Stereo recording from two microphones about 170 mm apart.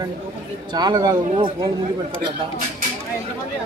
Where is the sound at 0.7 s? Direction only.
25° right (ahead or behind).